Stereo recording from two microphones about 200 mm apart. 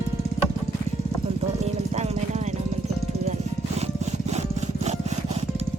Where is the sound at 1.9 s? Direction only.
30° right (ahead or behind).